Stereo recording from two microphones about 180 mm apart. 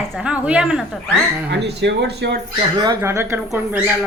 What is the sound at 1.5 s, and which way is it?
Speech, 70° right (ahead or behind).